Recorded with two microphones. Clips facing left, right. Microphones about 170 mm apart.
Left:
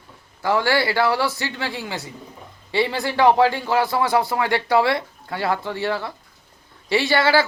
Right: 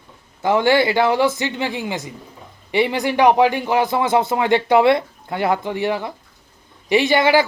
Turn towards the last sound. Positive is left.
turn(degrees=-15)  # may be behind; listen again after turning